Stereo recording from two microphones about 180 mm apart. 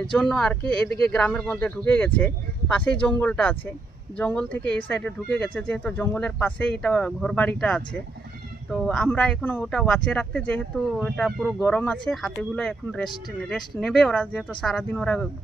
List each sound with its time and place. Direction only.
0.0 s speech: 5° left (ahead or behind)